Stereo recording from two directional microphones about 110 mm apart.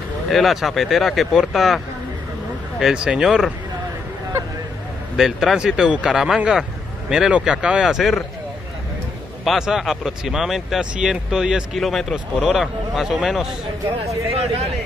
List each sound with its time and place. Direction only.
0.3 s speech: centre (ahead or behind)
2.8 s speech: 5° right (ahead or behind)
5.1 s speech: 5° right (ahead or behind)
9.4 s speech: centre (ahead or behind)
14.0 s speech: 70° right (ahead or behind)